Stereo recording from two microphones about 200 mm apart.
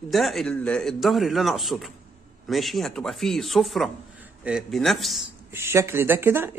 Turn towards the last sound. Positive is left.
turn(degrees=-10)  # may be behind; listen again after turning